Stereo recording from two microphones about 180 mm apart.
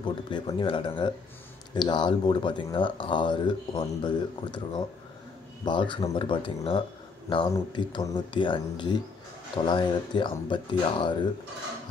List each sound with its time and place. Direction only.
0.0 s speech: 30° left (ahead or behind)